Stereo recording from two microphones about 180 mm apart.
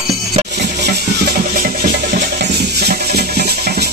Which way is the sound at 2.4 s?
60° right (ahead or behind).